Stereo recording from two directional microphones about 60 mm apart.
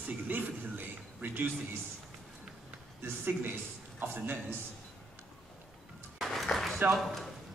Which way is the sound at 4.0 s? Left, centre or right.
Right.